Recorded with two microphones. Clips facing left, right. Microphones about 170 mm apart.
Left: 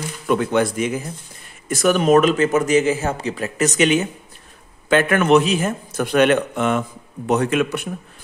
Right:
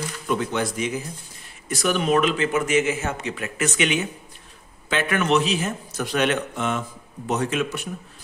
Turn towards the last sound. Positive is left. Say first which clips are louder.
# left 5 dB
turn(degrees=60)  # may be behind; listen again after turning